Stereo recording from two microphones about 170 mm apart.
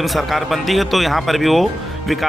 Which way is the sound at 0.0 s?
Centre (ahead or behind).